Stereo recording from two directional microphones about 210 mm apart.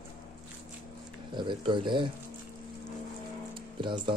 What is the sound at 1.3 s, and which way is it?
Speech, 20° right (ahead or behind).